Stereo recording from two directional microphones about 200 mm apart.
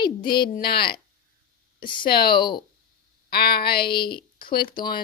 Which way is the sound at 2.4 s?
20° left (ahead or behind).